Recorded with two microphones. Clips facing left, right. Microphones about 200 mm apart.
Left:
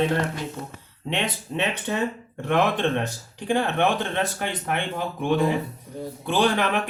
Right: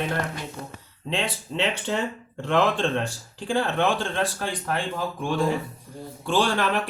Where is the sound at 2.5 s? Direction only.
15° left (ahead or behind).